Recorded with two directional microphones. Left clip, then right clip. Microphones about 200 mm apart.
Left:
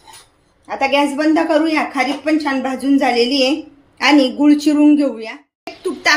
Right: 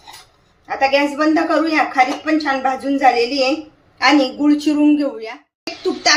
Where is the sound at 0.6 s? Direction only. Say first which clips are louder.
Even; 30° left (ahead or behind).